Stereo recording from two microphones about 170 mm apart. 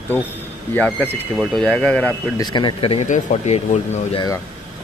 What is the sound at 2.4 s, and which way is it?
Speech, 25° left (ahead or behind).